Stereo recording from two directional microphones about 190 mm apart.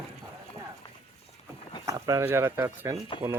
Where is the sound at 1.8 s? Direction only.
15° right (ahead or behind).